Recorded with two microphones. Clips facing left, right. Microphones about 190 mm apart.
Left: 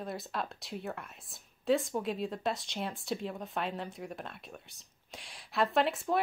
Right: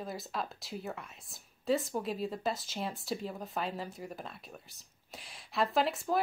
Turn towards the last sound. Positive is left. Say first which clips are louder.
# left 1 dB
turn(degrees=0)  # may be behind; listen again after turning